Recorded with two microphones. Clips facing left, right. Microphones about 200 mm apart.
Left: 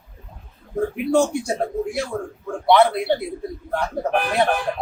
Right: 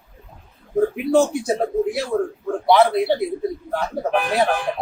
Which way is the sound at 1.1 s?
Centre (ahead or behind).